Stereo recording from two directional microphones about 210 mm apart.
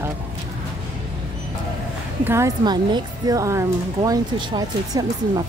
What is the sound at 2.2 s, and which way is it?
Speech, 15° right (ahead or behind).